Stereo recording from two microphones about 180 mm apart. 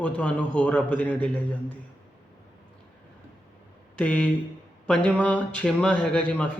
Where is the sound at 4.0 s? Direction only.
5° left (ahead or behind).